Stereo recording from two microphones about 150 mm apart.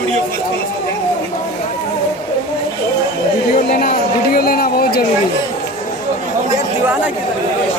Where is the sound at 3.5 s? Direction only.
60° left (ahead or behind).